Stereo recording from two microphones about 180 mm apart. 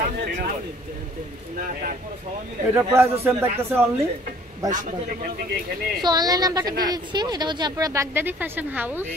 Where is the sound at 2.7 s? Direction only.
15° right (ahead or behind).